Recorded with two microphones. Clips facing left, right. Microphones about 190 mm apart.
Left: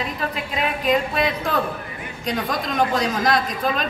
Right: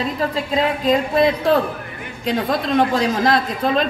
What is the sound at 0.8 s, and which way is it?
A woman's voice, 30° right (ahead or behind).